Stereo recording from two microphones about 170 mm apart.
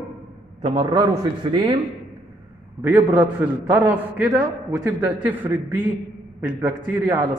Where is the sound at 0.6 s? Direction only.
30° right (ahead or behind).